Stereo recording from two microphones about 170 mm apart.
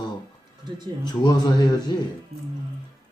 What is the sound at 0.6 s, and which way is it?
Speech, 25° right (ahead or behind).